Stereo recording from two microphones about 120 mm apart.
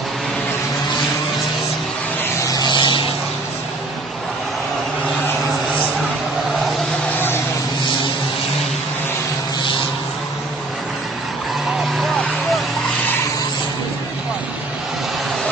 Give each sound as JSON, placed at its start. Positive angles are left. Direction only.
{"t": 2.5, "sound": "vehicle", "side_deg": 40}